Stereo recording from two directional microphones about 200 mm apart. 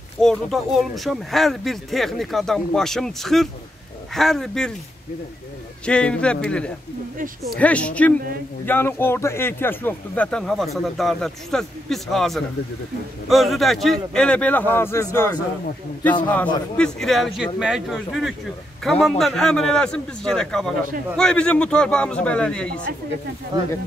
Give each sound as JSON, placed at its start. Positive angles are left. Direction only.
{"t": 0.2, "sound": "speech", "side_deg": 0}
{"t": 5.9, "sound": "a man's voice", "side_deg": 5}
{"t": 16.7, "sound": "speech", "side_deg": 5}